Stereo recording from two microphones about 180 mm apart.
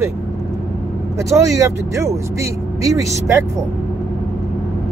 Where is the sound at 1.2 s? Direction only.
15° right (ahead or behind).